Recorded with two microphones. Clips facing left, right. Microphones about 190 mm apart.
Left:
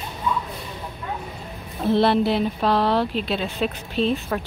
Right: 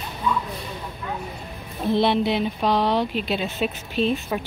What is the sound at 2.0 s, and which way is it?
Speech, 5° left (ahead or behind).